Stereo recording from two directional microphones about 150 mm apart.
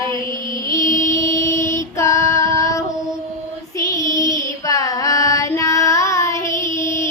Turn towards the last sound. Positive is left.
turn(degrees=20)  # may be behind; listen again after turning